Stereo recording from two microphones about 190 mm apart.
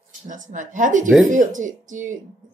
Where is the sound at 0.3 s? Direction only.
40° right (ahead or behind).